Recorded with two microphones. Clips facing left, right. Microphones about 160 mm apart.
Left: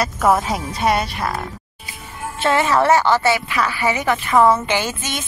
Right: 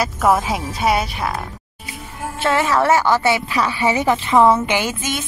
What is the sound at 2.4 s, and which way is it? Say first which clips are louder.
A woman's voice: left 1 dB; centre (ahead or behind).